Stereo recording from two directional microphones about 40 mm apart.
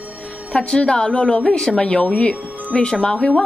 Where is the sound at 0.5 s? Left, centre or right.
Left.